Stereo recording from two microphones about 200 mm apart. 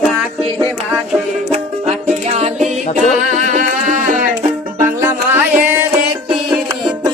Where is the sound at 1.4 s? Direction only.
30° right (ahead or behind).